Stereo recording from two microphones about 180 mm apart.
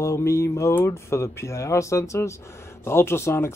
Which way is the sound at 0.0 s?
15° left (ahead or behind).